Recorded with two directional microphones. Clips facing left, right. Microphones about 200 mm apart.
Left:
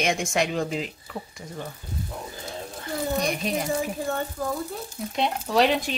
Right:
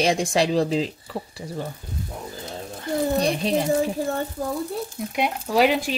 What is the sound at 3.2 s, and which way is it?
Speech, 30° right (ahead or behind).